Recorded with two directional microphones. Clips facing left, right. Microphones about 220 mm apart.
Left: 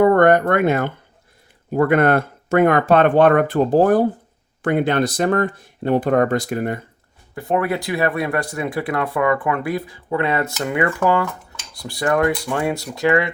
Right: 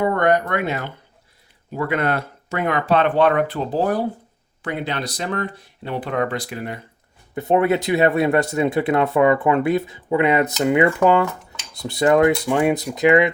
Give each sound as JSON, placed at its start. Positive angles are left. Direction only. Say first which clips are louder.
{"t": 0.0, "sound": "speech", "louder": "left 5 dB", "side_deg": 50}
{"t": 7.3, "sound": "speech", "louder": "right 3 dB", "side_deg": -20}